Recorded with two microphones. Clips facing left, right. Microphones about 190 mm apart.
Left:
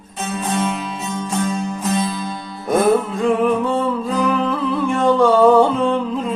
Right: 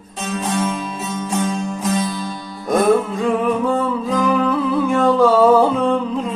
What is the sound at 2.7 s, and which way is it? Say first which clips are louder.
Music: even; centre (ahead or behind).